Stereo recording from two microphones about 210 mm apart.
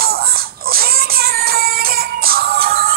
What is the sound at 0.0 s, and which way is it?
Music, 45° right (ahead or behind).